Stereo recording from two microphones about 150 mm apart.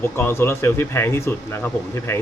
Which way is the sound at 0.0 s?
15° left (ahead or behind).